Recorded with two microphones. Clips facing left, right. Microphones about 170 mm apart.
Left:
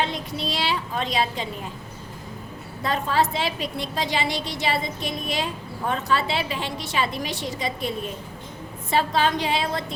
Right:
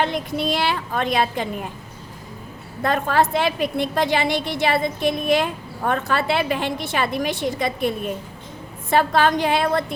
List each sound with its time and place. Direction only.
0.0 s a woman's voice: 55° right (ahead or behind)
2.8 s a woman's voice: 55° right (ahead or behind)